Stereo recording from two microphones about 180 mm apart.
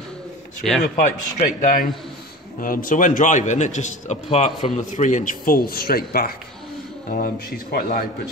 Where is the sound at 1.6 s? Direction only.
50° left (ahead or behind).